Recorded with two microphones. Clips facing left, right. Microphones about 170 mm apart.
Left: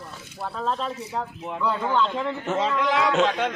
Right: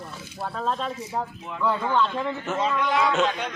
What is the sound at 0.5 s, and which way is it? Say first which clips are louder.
Speech: even; 10° right (ahead or behind).